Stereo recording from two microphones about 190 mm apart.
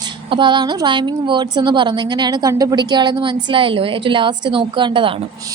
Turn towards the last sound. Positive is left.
turn(degrees=-25)  # may be behind; listen again after turning